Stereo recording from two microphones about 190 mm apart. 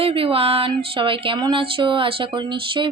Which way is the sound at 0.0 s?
30° right (ahead or behind).